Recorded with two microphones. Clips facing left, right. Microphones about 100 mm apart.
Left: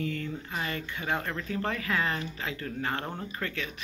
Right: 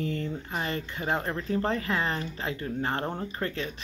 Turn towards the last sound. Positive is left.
turn(degrees=-30)  # may be behind; listen again after turning